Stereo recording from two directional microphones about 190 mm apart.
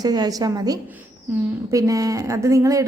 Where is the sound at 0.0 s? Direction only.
20° right (ahead or behind).